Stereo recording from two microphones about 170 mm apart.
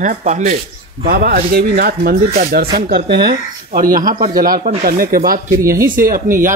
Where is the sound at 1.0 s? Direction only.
60° right (ahead or behind).